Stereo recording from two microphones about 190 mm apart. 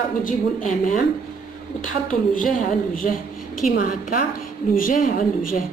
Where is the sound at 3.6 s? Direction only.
45° left (ahead or behind).